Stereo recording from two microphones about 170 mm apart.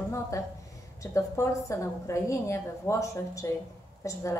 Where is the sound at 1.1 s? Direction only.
15° left (ahead or behind).